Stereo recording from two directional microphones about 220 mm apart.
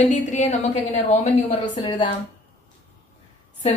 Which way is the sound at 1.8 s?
20° left (ahead or behind).